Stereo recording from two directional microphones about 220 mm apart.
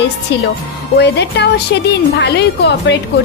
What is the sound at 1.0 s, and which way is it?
Speech, 50° left (ahead or behind).